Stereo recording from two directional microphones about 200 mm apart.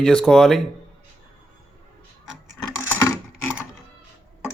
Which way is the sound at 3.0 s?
15° left (ahead or behind).